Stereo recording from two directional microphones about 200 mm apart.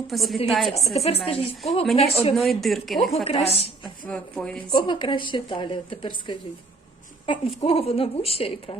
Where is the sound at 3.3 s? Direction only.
30° left (ahead or behind).